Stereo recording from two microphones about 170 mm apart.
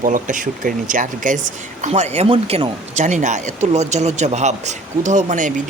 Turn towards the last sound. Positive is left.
turn(degrees=-45)  # may be behind; listen again after turning